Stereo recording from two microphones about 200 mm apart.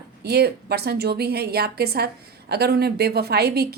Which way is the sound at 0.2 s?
55° right (ahead or behind).